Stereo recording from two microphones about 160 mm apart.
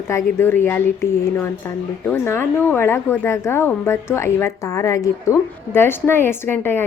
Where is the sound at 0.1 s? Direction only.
15° left (ahead or behind).